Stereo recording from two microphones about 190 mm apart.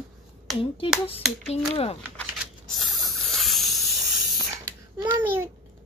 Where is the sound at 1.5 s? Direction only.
30° left (ahead or behind).